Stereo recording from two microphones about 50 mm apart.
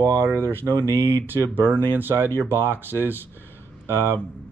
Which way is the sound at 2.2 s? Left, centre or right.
Left.